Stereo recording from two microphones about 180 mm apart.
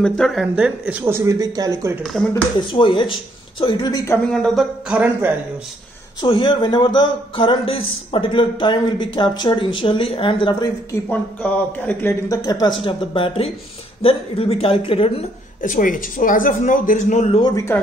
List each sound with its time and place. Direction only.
0.0 s speech: centre (ahead or behind); by 2.0 s 15° right (ahead or behind)
2.7 s speech: 25° left (ahead or behind)
4.3 s speech: centre (ahead or behind)
6.2 s speech: 25° left (ahead or behind)
11.1 s speech: 10° left (ahead or behind); by 15.2 s 30° left (ahead or behind)
15.6 s speech: 50° left (ahead or behind)
17.4 s speech: 20° left (ahead or behind)